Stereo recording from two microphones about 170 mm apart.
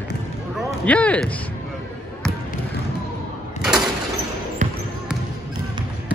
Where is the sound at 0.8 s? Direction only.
10° left (ahead or behind).